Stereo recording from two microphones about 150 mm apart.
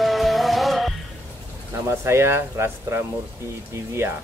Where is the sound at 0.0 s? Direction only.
Centre (ahead or behind).